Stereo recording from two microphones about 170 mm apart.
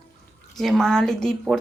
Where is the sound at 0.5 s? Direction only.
Centre (ahead or behind).